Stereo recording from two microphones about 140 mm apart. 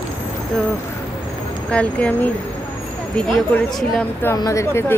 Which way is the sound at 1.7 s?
10° left (ahead or behind).